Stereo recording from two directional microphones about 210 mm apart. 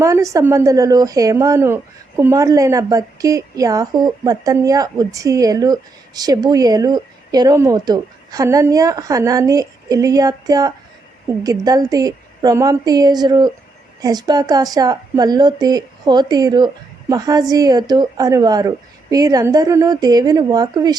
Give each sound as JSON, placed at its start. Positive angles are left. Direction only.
{"t": 0.0, "sound": "speech", "side_deg": -15}